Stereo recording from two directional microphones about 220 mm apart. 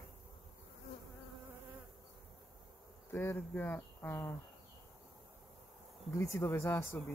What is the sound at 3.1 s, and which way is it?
Speech, 10° left (ahead or behind).